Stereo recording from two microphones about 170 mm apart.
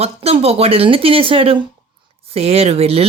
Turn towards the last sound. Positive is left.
turn(degrees=-35)  # may be behind; listen again after turning